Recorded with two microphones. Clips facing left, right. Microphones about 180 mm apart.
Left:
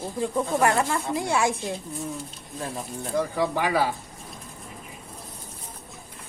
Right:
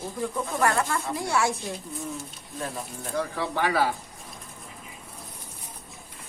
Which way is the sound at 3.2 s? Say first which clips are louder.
Left 2 dB; 15° left (ahead or behind).